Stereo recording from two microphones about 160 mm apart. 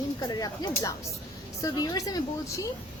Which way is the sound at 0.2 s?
25° left (ahead or behind).